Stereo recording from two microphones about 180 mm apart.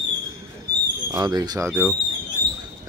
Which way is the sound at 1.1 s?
20° right (ahead or behind).